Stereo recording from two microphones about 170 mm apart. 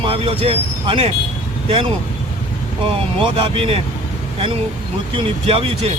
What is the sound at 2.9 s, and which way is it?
Speech, 30° right (ahead or behind).